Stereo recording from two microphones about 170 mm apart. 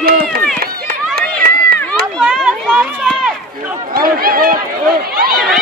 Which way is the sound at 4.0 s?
60° right (ahead or behind).